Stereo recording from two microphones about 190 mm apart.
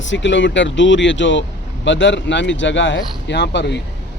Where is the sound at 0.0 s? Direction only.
75° left (ahead or behind).